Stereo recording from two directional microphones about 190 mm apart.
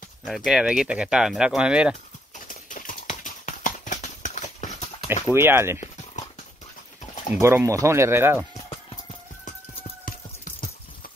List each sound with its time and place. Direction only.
0.2 s speech: centre (ahead or behind)
2.3 s clip-clop: 45° left (ahead or behind)
5.2 s speech: 10° right (ahead or behind)
7.3 s speech: 15° right (ahead or behind)
10.0 s a sound: 45° left (ahead or behind)